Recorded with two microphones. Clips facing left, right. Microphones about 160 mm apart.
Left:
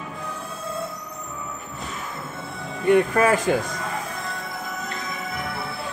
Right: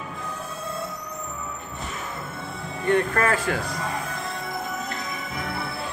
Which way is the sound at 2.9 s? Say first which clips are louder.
Left 4 dB; 15° left (ahead or behind).